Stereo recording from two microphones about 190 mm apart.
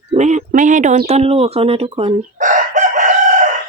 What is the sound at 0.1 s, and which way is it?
Speech, 35° right (ahead or behind).